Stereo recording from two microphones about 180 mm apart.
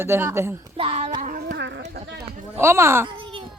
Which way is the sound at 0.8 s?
35° right (ahead or behind).